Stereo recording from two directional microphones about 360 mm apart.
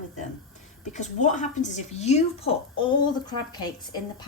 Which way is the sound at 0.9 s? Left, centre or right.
Centre.